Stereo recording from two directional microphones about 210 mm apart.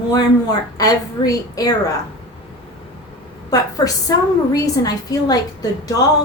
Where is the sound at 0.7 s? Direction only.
15° left (ahead or behind).